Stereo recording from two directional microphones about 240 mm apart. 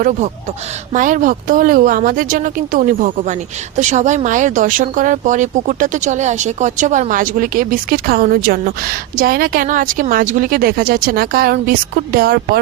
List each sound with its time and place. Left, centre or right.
0.9 s speech: right